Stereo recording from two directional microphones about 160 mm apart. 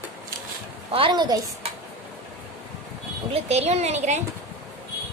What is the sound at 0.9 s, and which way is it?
Speech, 30° right (ahead or behind).